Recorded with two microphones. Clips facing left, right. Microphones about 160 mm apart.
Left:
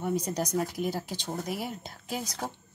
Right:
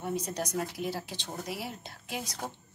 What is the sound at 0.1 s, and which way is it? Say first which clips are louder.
A woman's voice: left 3 dB; 40° left (ahead or behind).